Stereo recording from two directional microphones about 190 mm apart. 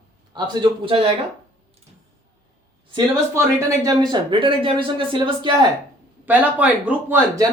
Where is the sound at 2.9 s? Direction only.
20° right (ahead or behind).